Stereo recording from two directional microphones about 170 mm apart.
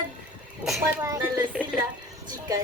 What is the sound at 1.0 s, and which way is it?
Speech, 20° right (ahead or behind).